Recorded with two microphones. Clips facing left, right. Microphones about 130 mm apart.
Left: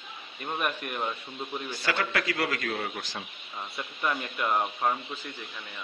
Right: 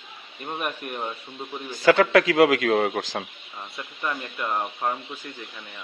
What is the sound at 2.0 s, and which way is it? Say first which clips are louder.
Speech: right 11 dB; 90° right.